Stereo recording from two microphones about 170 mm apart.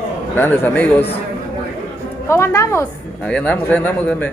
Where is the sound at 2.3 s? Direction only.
15° left (ahead or behind).